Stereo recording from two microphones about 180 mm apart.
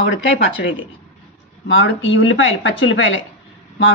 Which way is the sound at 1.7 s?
90° left.